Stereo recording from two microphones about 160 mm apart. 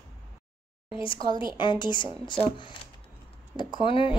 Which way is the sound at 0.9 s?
30° left (ahead or behind).